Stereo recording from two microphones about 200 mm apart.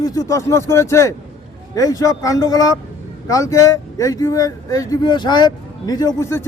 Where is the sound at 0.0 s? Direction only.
15° left (ahead or behind).